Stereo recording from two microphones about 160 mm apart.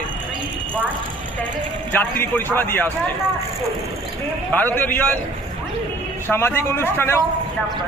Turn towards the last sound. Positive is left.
turn(degrees=15)  # may be behind; listen again after turning